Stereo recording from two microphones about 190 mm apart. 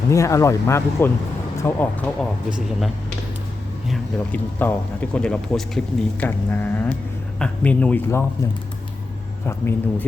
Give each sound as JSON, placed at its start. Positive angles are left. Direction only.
{"t": 0.1, "sound": "speech", "side_deg": 15}
{"t": 3.8, "sound": "speech", "side_deg": 5}
{"t": 9.5, "sound": "speech", "side_deg": 15}